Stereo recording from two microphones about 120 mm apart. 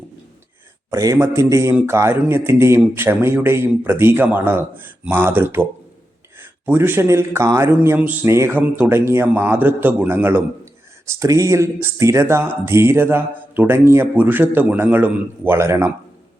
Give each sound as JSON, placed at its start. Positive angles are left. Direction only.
{"t": 0.9, "sound": "a man's voice", "side_deg": -25}
{"t": 7.8, "sound": "a man's voice", "side_deg": -15}